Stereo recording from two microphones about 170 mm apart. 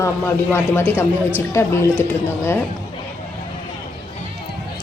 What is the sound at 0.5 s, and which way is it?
A woman's voice, 15° left (ahead or behind).